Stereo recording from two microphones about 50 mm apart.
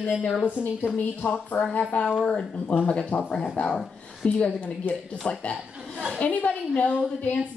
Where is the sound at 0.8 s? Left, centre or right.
Left.